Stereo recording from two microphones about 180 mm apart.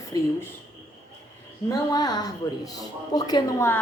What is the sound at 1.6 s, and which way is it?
A woman's voice, 20° left (ahead or behind).